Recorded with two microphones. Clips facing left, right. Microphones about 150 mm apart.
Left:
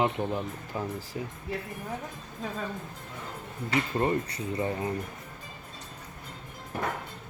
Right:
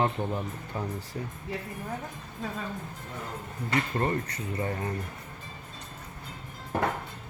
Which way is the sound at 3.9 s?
15° left (ahead or behind).